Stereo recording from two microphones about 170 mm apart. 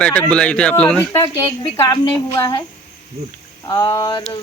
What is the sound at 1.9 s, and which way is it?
Speech, 25° left (ahead or behind).